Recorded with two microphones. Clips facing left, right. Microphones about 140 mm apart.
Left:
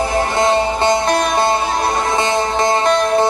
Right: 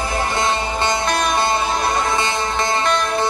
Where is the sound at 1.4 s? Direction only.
25° left (ahead or behind).